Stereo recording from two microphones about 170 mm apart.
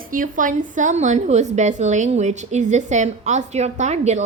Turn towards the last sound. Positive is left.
turn(degrees=-40)  # may be behind; listen again after turning